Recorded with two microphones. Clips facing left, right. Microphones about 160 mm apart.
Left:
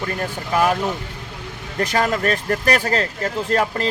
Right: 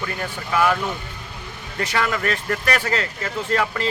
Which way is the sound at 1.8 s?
40° left (ahead or behind).